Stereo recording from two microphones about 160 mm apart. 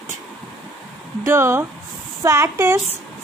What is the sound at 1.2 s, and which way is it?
Speech, 15° right (ahead or behind).